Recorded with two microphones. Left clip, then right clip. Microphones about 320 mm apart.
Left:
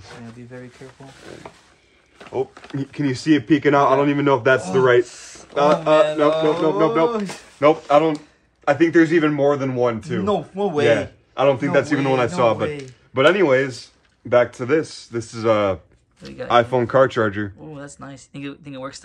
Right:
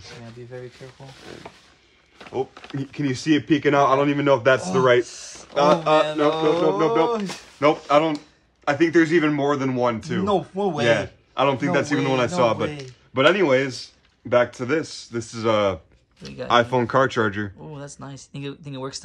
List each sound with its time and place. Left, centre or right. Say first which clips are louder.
1.5 s speech: left 2 dB; centre
5.0 s speech: even; centre
5.5 s speech: left 2 dB; centre
10.9 s speech: left 2 dB; centre
17.7 s speech: left 1 dB; centre